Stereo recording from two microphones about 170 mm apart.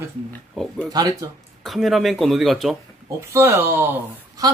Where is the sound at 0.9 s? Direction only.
20° right (ahead or behind).